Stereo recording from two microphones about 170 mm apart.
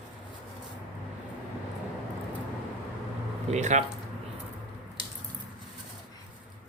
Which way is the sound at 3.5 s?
45° right (ahead or behind).